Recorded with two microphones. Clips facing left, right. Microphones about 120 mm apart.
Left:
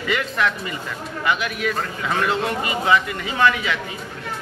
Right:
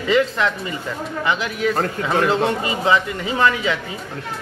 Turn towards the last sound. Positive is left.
turn(degrees=-25)  # may be behind; listen again after turning